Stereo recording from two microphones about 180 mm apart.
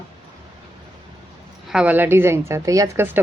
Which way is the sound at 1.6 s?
5° right (ahead or behind).